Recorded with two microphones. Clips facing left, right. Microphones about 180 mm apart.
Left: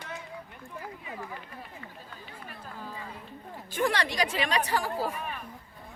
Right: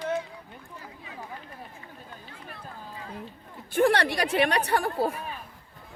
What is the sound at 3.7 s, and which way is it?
A woman's voice, 60° right (ahead or behind).